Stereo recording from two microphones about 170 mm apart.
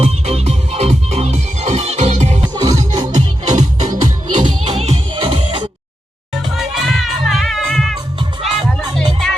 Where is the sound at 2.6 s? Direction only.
20° right (ahead or behind).